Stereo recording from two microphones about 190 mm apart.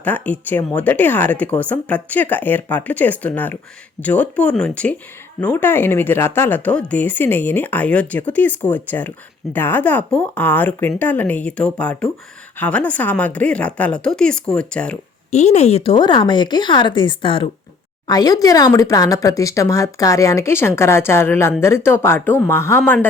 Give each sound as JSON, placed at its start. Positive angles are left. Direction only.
{"t": 0.0, "sound": "speech", "side_deg": 10}
{"t": 15.3, "sound": "speech", "side_deg": 35}